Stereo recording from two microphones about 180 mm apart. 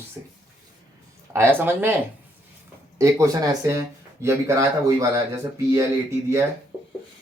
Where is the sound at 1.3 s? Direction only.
15° right (ahead or behind).